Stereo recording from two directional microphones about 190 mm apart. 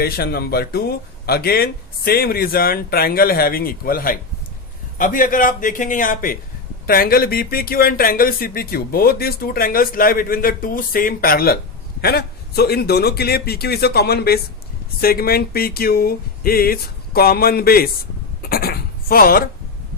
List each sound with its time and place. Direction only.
0.0 s a man's voice: 55° left (ahead or behind)
18.4 s writing: 50° left (ahead or behind)